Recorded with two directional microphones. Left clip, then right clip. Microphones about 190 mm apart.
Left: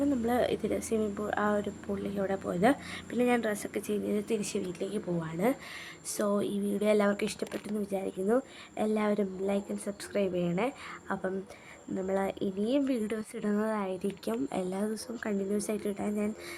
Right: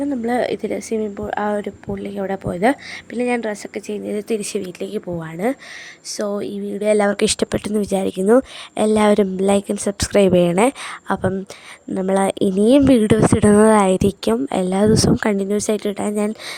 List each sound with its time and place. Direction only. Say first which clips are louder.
0.3 s a woman's voice: right 12 dB; 30° right (ahead or behind); by 16.3 s 55° right (ahead or behind)